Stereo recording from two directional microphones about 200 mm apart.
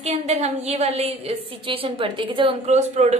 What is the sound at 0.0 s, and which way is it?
A woman's voice, 35° right (ahead or behind).